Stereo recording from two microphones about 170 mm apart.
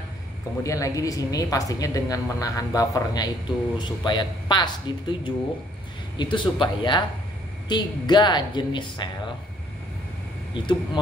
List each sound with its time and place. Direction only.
0.7 s speech: 20° left (ahead or behind)
10.5 s speech: 25° left (ahead or behind)